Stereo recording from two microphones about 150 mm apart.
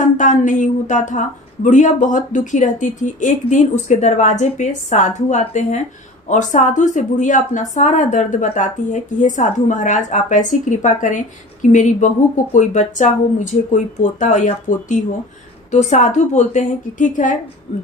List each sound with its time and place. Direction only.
0.0 s a woman's voice: 55° left (ahead or behind)